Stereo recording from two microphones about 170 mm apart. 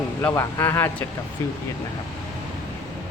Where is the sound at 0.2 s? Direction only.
15° left (ahead or behind).